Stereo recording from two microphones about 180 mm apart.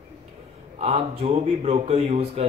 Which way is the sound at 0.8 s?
35° right (ahead or behind).